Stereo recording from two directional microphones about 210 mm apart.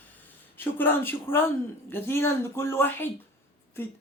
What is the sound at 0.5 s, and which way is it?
Speech, 10° left (ahead or behind).